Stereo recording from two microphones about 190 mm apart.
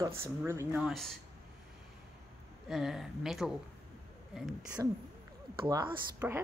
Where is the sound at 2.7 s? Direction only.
Centre (ahead or behind).